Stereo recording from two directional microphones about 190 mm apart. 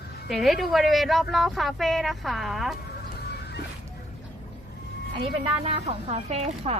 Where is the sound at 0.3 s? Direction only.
Centre (ahead or behind).